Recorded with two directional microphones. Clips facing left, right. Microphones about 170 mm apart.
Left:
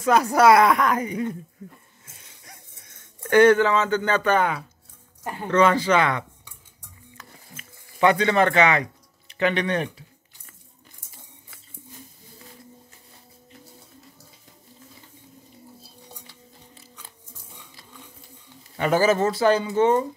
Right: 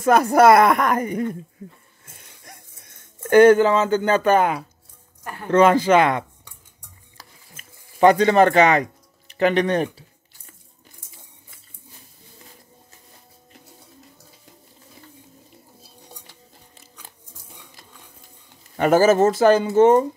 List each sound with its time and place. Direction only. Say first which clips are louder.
0.0 s speech: right 3 dB; 50° right (ahead or behind)
3.2 s speech: right 4 dB; 45° right (ahead or behind)
7.2 s a sound: left 2 dB; 40° right (ahead or behind)
9.3 s speech: right 4 dB; 40° right (ahead or behind)
18.8 s speech: right 5 dB; 45° right (ahead or behind)